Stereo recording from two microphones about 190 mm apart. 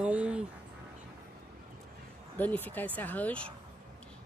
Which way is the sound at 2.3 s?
10° left (ahead or behind).